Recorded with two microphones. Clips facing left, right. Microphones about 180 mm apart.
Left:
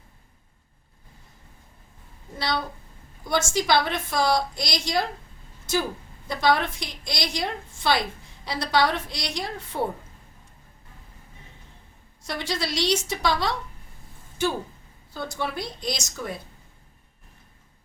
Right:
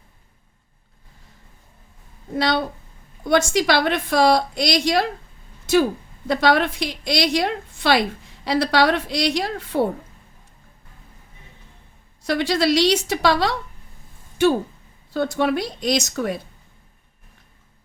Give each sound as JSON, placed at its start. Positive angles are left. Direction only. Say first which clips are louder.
{"t": 2.3, "sound": "a woman's voice", "louder": "right 7 dB", "side_deg": -70}
{"t": 6.2, "sound": "a woman's voice", "louder": "right 5 dB", "side_deg": -70}
{"t": 12.2, "sound": "a woman's voice", "louder": "right 10 dB", "side_deg": -70}
{"t": 15.1, "sound": "a woman's voice", "louder": "right 10 dB", "side_deg": -70}